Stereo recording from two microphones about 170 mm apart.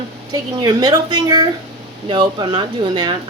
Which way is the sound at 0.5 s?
25° right (ahead or behind).